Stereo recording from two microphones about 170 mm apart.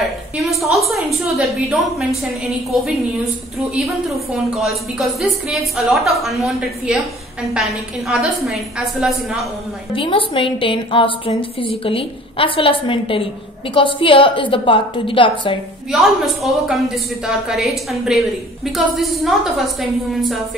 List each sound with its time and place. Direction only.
0.5 s a woman's voice: centre (ahead or behind)
3.7 s a woman's voice: centre (ahead or behind)
9.9 s a woman's voice: 30° left (ahead or behind)
15.9 s a woman's voice: centre (ahead or behind)